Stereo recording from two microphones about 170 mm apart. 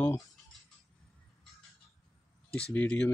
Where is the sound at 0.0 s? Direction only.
20° left (ahead or behind).